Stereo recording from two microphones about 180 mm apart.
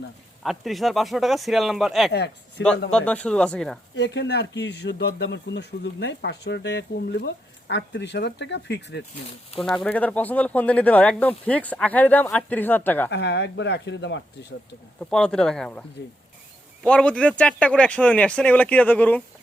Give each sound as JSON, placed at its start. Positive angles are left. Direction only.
{"t": 0.4, "sound": "speech", "side_deg": 0}
{"t": 2.1, "sound": "speech", "side_deg": 70}
{"t": 2.9, "sound": "speech", "side_deg": 5}
{"t": 3.9, "sound": "speech", "side_deg": 75}
{"t": 9.6, "sound": "speech", "side_deg": 0}
{"t": 13.1, "sound": "speech", "side_deg": 75}
{"t": 15.1, "sound": "speech", "side_deg": 5}
{"t": 16.8, "sound": "speech", "side_deg": 5}